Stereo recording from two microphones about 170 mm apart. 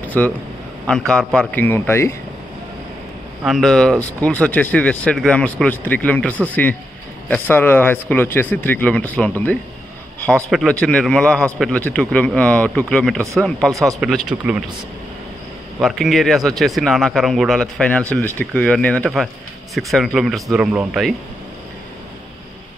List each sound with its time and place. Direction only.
0.0 s a sound: 10° left (ahead or behind)
0.8 s speech: 5° left (ahead or behind)
3.4 s a man's voice: centre (ahead or behind)
15.8 s a man's voice: centre (ahead or behind)